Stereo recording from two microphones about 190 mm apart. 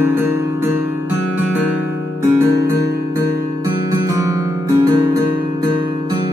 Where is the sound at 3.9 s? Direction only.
15° right (ahead or behind).